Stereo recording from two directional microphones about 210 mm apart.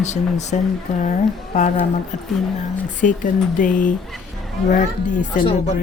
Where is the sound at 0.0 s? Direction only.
35° left (ahead or behind).